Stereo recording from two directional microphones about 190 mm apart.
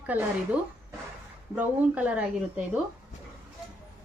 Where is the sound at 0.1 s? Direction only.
10° right (ahead or behind).